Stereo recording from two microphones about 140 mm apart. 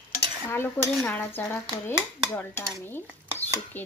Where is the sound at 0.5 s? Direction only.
15° left (ahead or behind).